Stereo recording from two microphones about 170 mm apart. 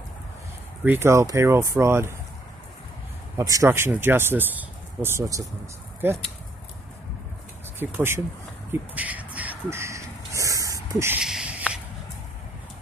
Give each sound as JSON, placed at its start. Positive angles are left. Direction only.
{"t": 0.8, "sound": "speech", "side_deg": -15}
{"t": 3.3, "sound": "speech", "side_deg": -20}
{"t": 7.8, "sound": "speech", "side_deg": -15}
{"t": 8.9, "sound": "crow", "side_deg": -10}